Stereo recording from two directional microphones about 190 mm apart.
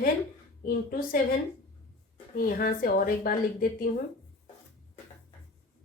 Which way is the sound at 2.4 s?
50° left (ahead or behind).